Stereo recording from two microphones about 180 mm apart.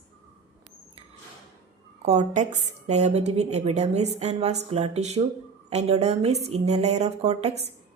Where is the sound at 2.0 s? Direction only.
40° right (ahead or behind).